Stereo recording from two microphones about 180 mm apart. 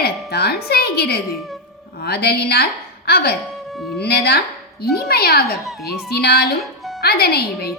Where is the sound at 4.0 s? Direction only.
65° left (ahead or behind).